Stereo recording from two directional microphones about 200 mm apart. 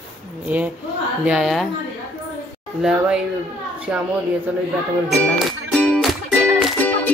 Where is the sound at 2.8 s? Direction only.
5° right (ahead or behind).